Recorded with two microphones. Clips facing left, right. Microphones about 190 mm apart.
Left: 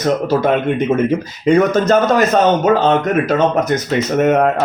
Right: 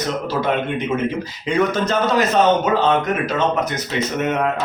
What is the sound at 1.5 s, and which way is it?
Speech, 45° left (ahead or behind).